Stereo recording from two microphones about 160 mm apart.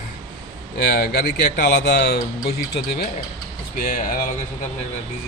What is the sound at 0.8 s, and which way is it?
Speech, 85° left.